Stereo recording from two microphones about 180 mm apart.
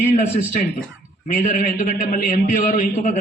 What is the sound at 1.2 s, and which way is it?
A man's voice, 40° left (ahead or behind).